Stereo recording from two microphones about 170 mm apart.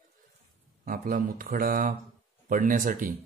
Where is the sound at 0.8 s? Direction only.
55° right (ahead or behind).